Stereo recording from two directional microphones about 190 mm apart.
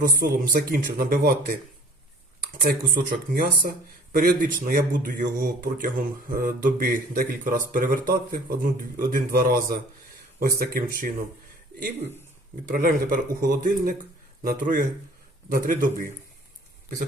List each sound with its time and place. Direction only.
0.0 s speech: 50° right (ahead or behind)
12.6 s speech: 45° right (ahead or behind)